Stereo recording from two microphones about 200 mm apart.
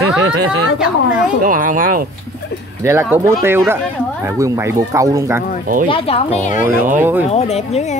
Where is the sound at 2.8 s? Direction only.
15° right (ahead or behind).